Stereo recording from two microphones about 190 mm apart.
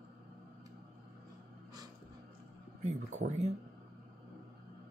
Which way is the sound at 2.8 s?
40° right (ahead or behind).